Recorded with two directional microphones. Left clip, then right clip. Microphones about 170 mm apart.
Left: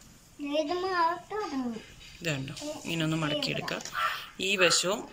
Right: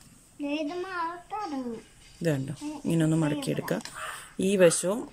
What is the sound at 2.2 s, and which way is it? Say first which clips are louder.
Speech: right 4 dB; 45° right (ahead or behind).